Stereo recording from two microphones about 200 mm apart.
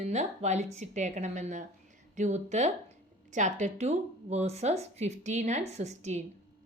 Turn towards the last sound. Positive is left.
turn(degrees=-35)  # may be behind; listen again after turning